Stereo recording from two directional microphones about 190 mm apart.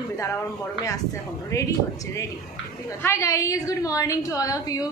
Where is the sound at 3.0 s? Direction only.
15° left (ahead or behind).